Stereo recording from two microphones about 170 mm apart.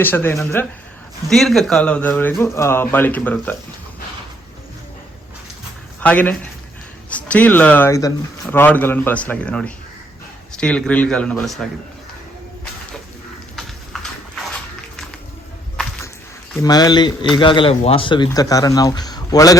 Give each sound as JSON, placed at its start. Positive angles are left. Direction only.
{"t": 0.0, "sound": "speech", "side_deg": 10}
{"t": 1.3, "sound": "a man's voice", "side_deg": 0}
{"t": 6.0, "sound": "a man's voice", "side_deg": 10}
{"t": 13.9, "sound": "a sound", "side_deg": 0}
{"t": 16.6, "sound": "speech", "side_deg": 25}